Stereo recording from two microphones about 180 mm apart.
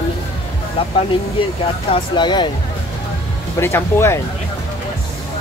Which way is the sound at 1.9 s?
25° left (ahead or behind).